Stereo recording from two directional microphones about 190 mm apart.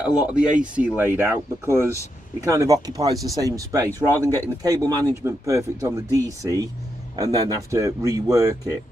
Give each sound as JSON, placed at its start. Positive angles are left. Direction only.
{"t": 0.0, "sound": "speech", "side_deg": -5}